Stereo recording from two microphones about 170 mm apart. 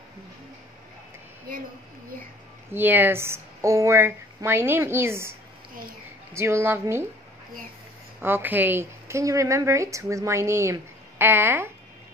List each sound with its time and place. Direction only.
2.7 s a woman's voice: 10° right (ahead or behind)
6.3 s a woman's voice: 15° right (ahead or behind)
8.2 s a woman's voice: 10° right (ahead or behind)